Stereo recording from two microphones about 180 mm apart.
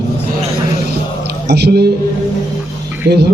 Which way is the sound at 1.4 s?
65° right (ahead or behind).